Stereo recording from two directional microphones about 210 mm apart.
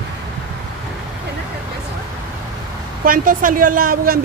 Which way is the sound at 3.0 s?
40° right (ahead or behind).